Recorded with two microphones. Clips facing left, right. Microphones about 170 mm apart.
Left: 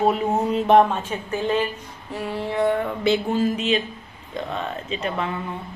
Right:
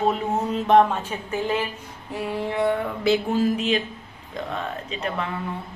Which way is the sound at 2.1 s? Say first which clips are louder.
Left 1 dB; 10° right (ahead or behind).